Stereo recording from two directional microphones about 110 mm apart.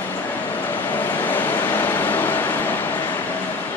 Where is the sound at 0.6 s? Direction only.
20° left (ahead or behind).